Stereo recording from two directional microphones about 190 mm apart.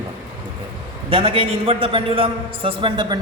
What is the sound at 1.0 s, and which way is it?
A man's voice, 30° right (ahead or behind).